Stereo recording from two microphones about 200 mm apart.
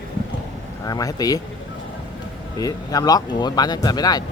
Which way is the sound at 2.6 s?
20° left (ahead or behind).